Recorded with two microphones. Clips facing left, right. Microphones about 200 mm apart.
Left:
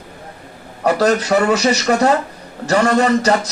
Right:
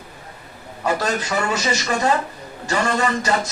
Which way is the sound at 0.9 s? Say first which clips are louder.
Left 11 dB; 70° left (ahead or behind).